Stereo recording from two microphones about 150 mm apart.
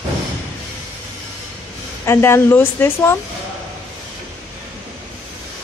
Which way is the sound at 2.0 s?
15° left (ahead or behind).